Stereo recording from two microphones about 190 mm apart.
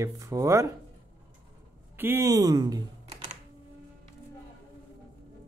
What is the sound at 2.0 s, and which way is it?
Speech, 10° right (ahead or behind).